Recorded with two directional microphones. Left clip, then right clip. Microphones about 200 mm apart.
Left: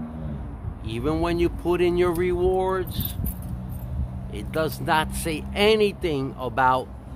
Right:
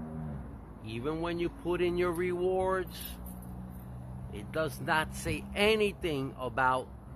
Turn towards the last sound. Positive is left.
turn(degrees=10)  # may be behind; listen again after turning